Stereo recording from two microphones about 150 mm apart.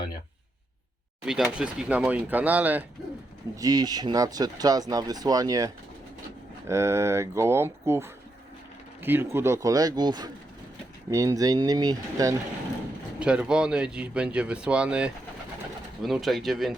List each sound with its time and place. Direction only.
1.2 s speech: 5° right (ahead or behind)
3.5 s speech: 25° right (ahead or behind)
13.1 s speech: 5° right (ahead or behind)